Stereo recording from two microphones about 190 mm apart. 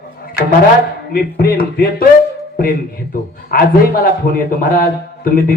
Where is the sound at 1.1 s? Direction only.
50° left (ahead or behind).